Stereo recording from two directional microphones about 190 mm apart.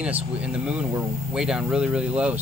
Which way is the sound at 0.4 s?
5° right (ahead or behind).